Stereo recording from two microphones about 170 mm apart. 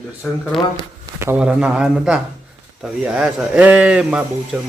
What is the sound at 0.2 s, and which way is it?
Speech, 10° left (ahead or behind).